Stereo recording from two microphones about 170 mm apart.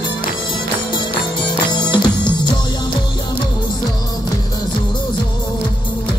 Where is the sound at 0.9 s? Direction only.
25° left (ahead or behind).